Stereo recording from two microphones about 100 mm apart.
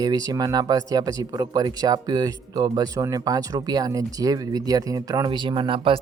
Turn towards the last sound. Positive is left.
turn(degrees=-60)  # may be behind; listen again after turning